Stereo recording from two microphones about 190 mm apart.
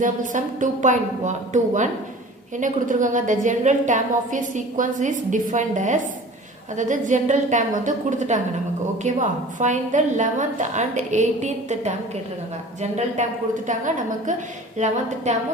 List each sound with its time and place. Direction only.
0.0 s a woman's voice: 40° right (ahead or behind)